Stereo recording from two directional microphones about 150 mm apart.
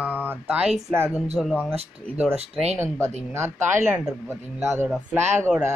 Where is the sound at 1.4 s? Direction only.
5° left (ahead or behind).